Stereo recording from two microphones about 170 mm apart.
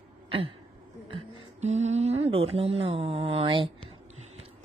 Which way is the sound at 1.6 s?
40° right (ahead or behind).